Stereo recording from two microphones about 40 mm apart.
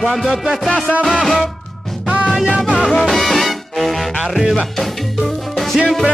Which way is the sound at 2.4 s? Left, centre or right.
Right.